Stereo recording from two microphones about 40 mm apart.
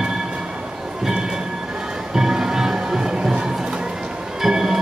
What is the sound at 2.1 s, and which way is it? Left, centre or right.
Music, centre.